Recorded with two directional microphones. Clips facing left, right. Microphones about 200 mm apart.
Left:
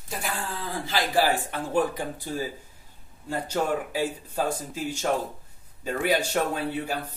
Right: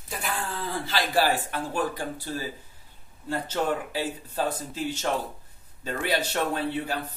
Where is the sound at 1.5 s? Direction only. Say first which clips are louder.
Left 3 dB; 20° left (ahead or behind).